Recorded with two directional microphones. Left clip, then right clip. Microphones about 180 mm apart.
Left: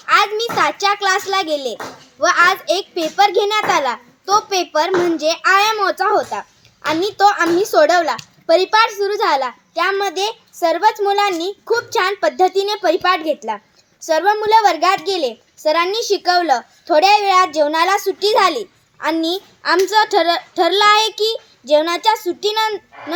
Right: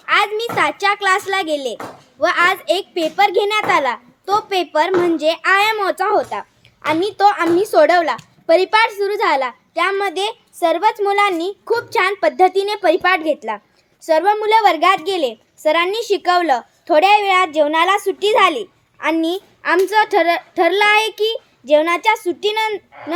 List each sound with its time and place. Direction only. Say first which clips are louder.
0.1 s a child's voice: left 2 dB; 10° right (ahead or behind)
17.9 s a child's voice: left 1 dB; 30° right (ahead or behind)
18.2 s a child's voice: right 1 dB; 10° right (ahead or behind)
22.4 s a child's voice: left 1 dB; 40° right (ahead or behind)